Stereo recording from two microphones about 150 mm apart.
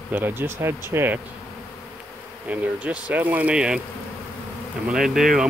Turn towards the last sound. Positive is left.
turn(degrees=0)  # may be behind; listen again after turning